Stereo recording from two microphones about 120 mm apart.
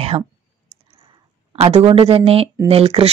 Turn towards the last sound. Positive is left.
turn(degrees=-55)  # may be behind; listen again after turning